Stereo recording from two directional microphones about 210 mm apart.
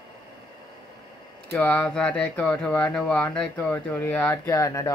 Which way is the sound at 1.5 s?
5° left (ahead or behind).